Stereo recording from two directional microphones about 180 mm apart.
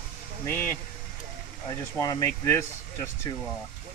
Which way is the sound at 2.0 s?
20° left (ahead or behind).